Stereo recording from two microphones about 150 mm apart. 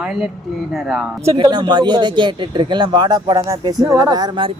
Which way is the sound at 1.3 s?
30° right (ahead or behind).